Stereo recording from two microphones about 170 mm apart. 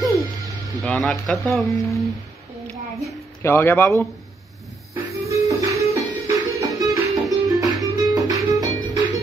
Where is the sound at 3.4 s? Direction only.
15° left (ahead or behind).